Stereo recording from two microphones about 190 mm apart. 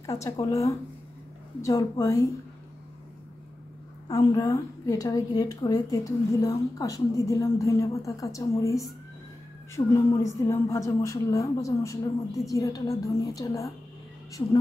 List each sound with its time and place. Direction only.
0.0 s a woman's voice: 15° left (ahead or behind)
4.1 s a woman's voice: 15° left (ahead or behind)
9.9 s a woman's voice: 15° left (ahead or behind)